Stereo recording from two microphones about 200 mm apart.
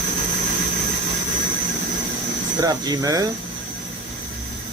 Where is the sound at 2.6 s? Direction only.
20° right (ahead or behind).